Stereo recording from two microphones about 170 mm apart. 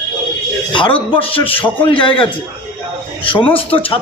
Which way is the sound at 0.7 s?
30° left (ahead or behind).